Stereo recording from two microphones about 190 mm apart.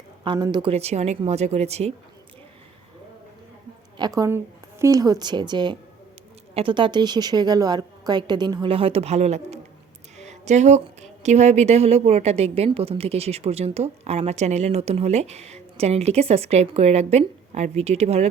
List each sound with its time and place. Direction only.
0.3 s a woman's voice: 20° right (ahead or behind)
3.9 s a woman's voice: 20° right (ahead or behind); by 18.3 s 35° right (ahead or behind)